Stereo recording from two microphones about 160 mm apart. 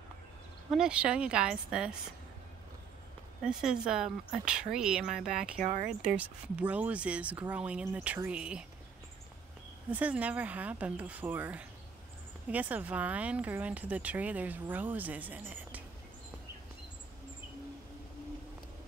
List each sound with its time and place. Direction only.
0.7 s speech: 5° right (ahead or behind)
3.4 s speech: 5° right (ahead or behind)
5.6 s speech: 55° right (ahead or behind)
6.0 s speech: 10° right (ahead or behind)
9.8 s speech: 10° right (ahead or behind)